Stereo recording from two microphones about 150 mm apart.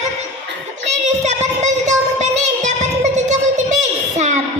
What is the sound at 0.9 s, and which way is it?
Child singing, 50° right (ahead or behind).